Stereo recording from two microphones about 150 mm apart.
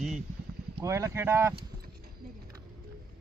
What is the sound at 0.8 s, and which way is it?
Speech, 20° right (ahead or behind).